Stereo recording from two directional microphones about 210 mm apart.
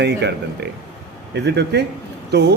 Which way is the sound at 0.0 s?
55° right (ahead or behind).